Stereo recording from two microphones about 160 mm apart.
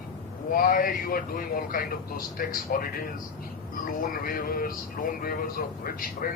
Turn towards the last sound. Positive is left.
turn(degrees=65)  # may be behind; listen again after turning